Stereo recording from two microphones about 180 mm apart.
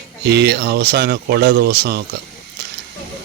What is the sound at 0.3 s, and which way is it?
Speech, 70° right (ahead or behind).